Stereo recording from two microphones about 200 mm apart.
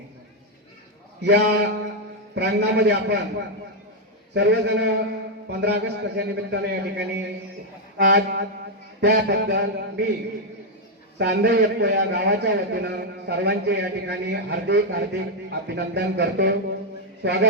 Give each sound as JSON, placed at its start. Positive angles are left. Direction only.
{"t": 1.2, "sound": "a man's voice", "side_deg": -60}
{"t": 4.4, "sound": "a man's voice", "side_deg": -60}
{"t": 11.2, "sound": "a man's voice", "side_deg": -55}